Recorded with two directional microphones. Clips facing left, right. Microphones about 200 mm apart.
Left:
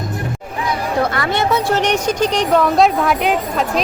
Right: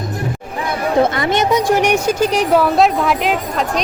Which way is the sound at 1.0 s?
20° right (ahead or behind).